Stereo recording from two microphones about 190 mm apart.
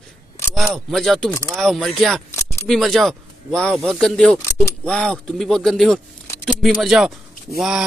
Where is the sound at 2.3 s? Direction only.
15° left (ahead or behind).